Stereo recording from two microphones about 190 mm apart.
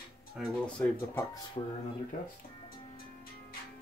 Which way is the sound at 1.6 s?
30° left (ahead or behind).